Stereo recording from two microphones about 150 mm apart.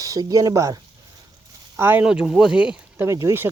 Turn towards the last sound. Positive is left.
turn(degrees=-15)  # may be behind; listen again after turning